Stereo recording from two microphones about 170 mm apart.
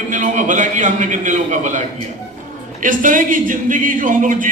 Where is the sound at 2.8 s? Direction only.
50° right (ahead or behind).